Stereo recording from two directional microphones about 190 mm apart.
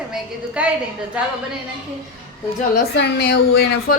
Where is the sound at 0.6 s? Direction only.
5° right (ahead or behind).